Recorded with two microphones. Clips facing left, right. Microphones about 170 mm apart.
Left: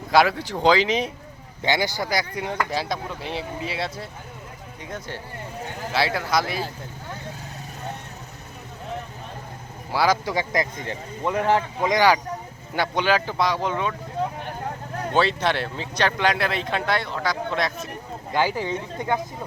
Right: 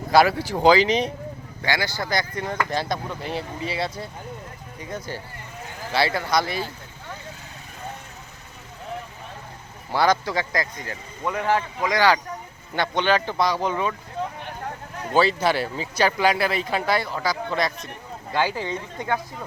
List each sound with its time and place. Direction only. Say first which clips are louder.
0.1 s speech: right 1 dB; centre (ahead or behind)
1.6 s speech: left 2 dB; 20° left (ahead or behind); by 6.7 s centre (ahead or behind)
9.9 s speech: right 1 dB; 5° left (ahead or behind)
10.2 s speech: left 2 dB; 15° left (ahead or behind); by 13.9 s centre (ahead or behind)
15.1 s speech: right 2 dB; centre (ahead or behind)
18.3 s speech: left 1 dB; 15° left (ahead or behind)